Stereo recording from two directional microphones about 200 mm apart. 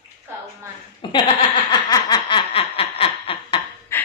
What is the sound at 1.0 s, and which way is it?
Speech, 25° left (ahead or behind).